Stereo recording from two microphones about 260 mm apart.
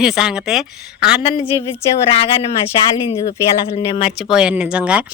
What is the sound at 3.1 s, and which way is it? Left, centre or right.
Speech, left.